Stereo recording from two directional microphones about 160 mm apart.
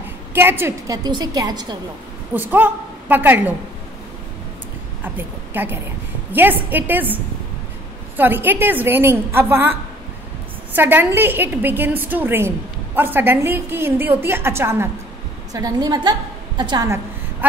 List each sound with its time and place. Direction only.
0.3 s a woman's voice: 15° right (ahead or behind)
2.3 s a woman's voice: 10° right (ahead or behind)
5.0 s a woman's voice: 10° right (ahead or behind)
8.2 s a woman's voice: 10° right (ahead or behind)